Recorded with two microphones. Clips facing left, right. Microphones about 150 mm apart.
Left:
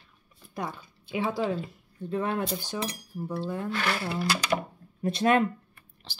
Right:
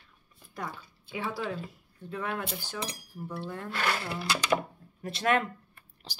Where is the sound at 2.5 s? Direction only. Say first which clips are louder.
Left 5 dB; 15° left (ahead or behind).